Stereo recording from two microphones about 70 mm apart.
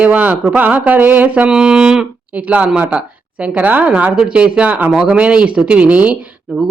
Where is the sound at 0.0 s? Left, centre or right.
Right.